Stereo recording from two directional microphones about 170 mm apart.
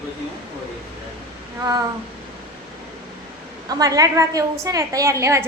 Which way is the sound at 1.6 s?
20° right (ahead or behind).